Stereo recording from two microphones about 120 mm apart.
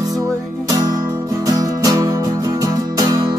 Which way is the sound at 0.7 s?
30° right (ahead or behind).